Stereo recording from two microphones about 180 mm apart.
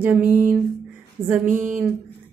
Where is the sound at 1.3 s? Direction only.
10° right (ahead or behind).